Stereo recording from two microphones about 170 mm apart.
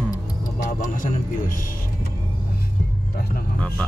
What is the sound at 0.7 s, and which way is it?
A man's voice, 50° left (ahead or behind).